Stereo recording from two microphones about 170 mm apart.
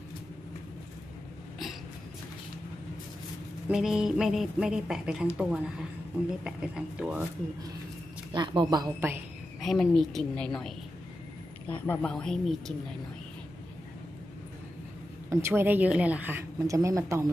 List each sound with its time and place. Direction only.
3.6 s a woman's voice: 5° right (ahead or behind)
8.3 s a woman's voice: 30° right (ahead or behind)
9.6 s a woman's voice: centre (ahead or behind)
11.8 s a woman's voice: 10° left (ahead or behind)
15.2 s a woman's voice: 15° right (ahead or behind)